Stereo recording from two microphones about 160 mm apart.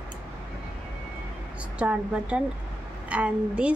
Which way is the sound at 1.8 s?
10° right (ahead or behind).